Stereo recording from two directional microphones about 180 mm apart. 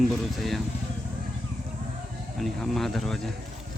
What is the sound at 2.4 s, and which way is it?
Speech, centre (ahead or behind).